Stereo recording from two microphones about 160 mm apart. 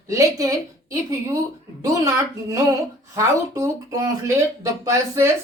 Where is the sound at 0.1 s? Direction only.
20° right (ahead or behind).